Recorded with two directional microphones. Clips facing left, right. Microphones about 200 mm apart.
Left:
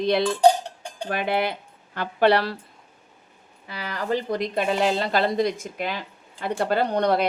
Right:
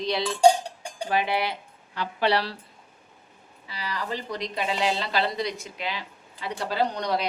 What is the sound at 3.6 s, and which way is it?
A woman's voice, 55° left (ahead or behind).